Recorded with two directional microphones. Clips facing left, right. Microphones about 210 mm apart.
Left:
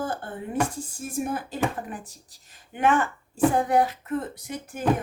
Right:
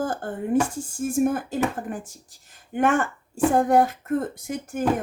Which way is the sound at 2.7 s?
45° right (ahead or behind).